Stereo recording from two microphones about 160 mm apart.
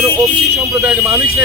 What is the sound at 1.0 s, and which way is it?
Speech, 20° right (ahead or behind).